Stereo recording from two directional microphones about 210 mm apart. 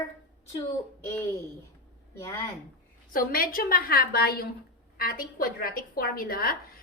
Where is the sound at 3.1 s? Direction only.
45° left (ahead or behind).